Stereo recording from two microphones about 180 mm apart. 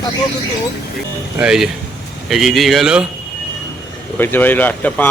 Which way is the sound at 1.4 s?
5° right (ahead or behind).